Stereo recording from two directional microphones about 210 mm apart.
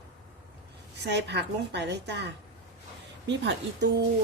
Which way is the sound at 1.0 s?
55° right (ahead or behind).